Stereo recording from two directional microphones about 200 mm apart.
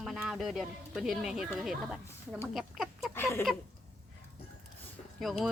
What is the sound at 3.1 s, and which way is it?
Speech, 10° left (ahead or behind).